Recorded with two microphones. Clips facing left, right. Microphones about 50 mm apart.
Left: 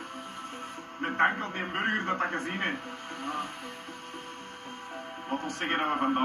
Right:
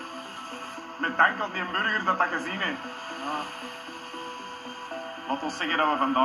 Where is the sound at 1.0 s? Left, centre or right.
Right.